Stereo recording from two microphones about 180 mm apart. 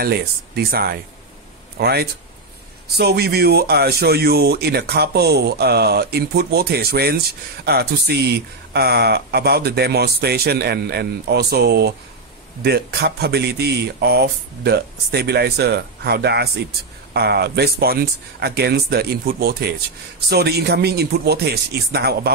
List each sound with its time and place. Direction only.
0.0 s speech: 60° right (ahead or behind)